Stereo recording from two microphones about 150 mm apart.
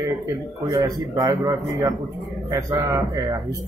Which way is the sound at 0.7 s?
25° right (ahead or behind).